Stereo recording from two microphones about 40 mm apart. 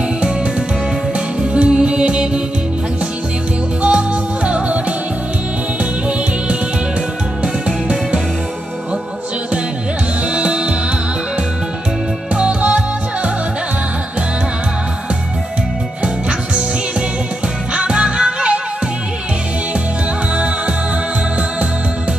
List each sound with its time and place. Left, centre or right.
1.4 s music: right
3.8 s music: right
7.4 s music: right
10.3 s music: right
12.4 s music: right
16.0 s music: right
17.7 s music: right